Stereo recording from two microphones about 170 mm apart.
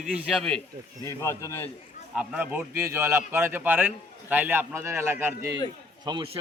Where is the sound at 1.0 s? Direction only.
15° left (ahead or behind).